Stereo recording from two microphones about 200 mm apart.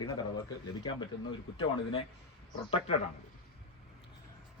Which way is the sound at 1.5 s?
25° left (ahead or behind).